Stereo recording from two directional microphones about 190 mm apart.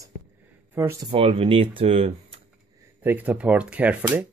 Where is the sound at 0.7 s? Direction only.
15° right (ahead or behind).